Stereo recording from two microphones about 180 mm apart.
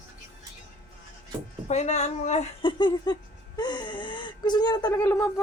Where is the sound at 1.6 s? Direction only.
40° left (ahead or behind).